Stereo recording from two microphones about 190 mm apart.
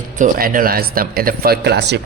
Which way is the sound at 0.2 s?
50° right (ahead or behind).